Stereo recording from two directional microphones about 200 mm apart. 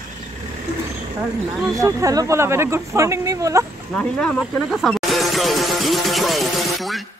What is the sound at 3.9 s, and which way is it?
Speech, 5° left (ahead or behind).